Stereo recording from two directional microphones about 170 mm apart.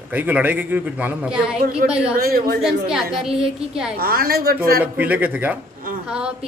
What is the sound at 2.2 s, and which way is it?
Speech, 65° right (ahead or behind).